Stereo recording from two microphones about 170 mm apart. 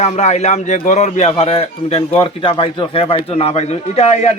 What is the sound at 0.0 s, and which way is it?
A man's voice, 40° left (ahead or behind).